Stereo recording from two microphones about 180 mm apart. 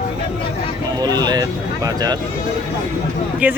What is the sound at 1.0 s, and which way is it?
Speech, 20° right (ahead or behind).